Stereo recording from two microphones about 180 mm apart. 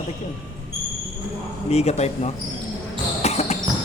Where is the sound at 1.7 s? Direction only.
35° left (ahead or behind).